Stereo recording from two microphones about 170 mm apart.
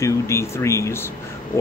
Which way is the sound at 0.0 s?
15° left (ahead or behind).